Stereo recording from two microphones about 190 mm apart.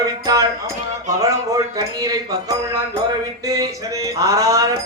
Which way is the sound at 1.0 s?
15° right (ahead or behind).